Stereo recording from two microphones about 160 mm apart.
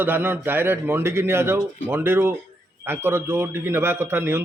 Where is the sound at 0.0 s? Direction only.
10° right (ahead or behind).